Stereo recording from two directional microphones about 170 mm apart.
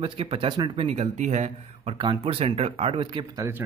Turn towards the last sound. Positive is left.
turn(degrees=-30)  # may be behind; listen again after turning